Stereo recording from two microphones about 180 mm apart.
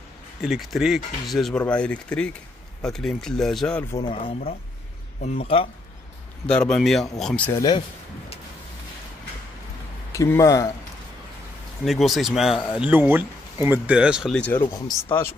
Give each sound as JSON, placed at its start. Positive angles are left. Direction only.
{"t": 0.4, "sound": "speech", "side_deg": 0}
{"t": 3.9, "sound": "speech", "side_deg": 30}
{"t": 6.4, "sound": "speech", "side_deg": 5}
{"t": 10.1, "sound": "speech", "side_deg": 15}
{"t": 11.8, "sound": "speech", "side_deg": 0}
{"t": 14.5, "sound": "speech", "side_deg": 20}